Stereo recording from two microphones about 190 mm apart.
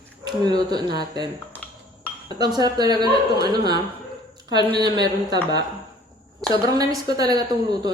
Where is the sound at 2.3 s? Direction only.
20° right (ahead or behind).